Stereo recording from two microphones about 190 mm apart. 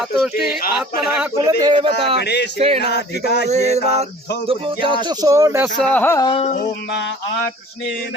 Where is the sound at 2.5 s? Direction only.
30° right (ahead or behind).